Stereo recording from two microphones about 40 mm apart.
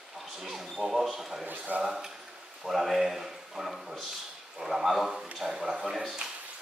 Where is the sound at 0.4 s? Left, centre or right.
Centre.